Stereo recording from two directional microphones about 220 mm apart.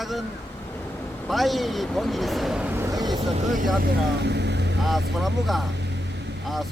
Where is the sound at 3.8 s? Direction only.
50° right (ahead or behind).